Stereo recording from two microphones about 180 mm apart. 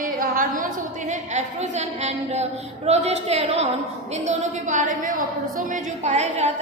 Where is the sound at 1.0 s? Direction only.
40° right (ahead or behind).